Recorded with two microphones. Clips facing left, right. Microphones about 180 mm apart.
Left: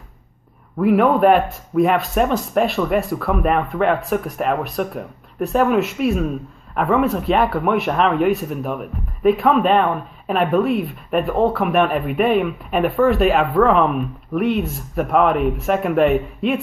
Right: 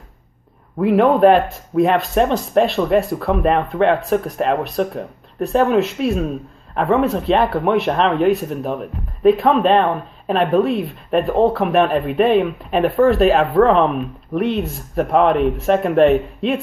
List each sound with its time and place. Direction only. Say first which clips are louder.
0.7 s speech: right 1 dB; 30° right (ahead or behind)